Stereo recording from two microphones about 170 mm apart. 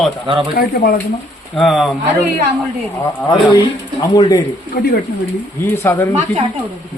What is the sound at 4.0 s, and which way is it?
Speech, 25° left (ahead or behind).